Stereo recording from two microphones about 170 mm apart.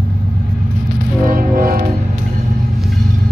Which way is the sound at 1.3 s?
55° right (ahead or behind).